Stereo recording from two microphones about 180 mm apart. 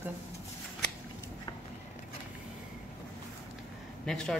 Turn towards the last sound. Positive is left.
turn(degrees=5)  # may be behind; listen again after turning